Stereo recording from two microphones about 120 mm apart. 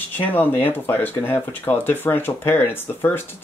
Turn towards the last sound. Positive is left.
turn(degrees=20)  # may be behind; listen again after turning